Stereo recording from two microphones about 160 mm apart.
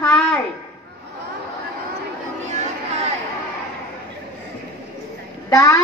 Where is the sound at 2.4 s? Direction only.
45° right (ahead or behind).